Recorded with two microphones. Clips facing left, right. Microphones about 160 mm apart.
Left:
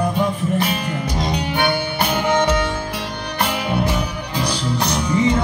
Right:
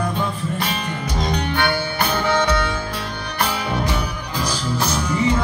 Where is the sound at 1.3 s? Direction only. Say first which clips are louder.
Left 1 dB; 15° left (ahead or behind).